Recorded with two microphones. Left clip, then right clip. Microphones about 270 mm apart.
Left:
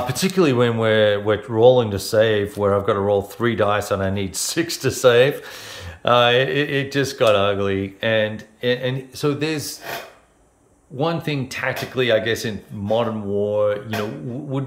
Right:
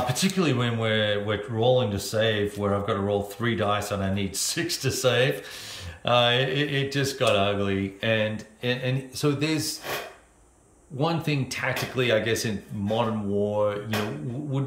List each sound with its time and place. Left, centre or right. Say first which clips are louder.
0.0 s speech: left 6 dB; centre
11.0 s speech: left 4 dB; centre